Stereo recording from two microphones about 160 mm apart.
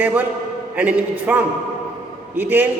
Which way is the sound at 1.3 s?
10° right (ahead or behind).